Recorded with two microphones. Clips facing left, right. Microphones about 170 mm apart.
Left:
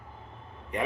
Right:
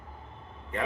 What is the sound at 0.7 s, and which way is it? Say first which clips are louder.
Speech: left 1 dB; 15° left (ahead or behind).